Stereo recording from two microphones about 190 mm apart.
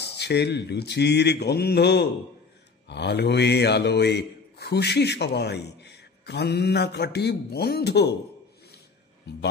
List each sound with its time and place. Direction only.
0.0 s a man's voice: 60° left (ahead or behind)